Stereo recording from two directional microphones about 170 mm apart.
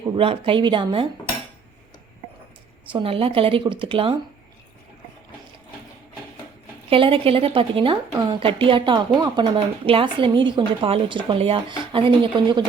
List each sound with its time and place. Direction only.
0.2 s a woman's voice: 30° right (ahead or behind)
2.9 s a woman's voice: 30° right (ahead or behind)
6.9 s a woman's voice: 30° right (ahead or behind)